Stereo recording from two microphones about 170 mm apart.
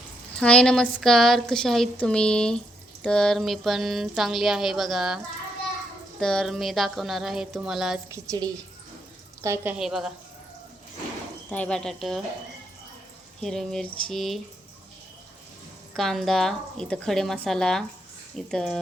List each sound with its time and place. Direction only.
0.3 s speech: 5° left (ahead or behind)
8.1 s a woman's voice: 20° right (ahead or behind)
9.7 s speech: 5° right (ahead or behind)
11.5 s speech: 5° left (ahead or behind)
13.4 s speech: centre (ahead or behind)
16.0 s speech: centre (ahead or behind)